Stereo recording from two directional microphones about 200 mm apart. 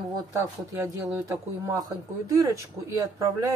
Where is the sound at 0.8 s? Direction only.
10° right (ahead or behind).